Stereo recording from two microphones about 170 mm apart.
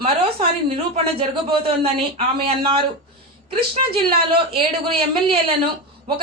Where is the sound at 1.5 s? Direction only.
35° right (ahead or behind).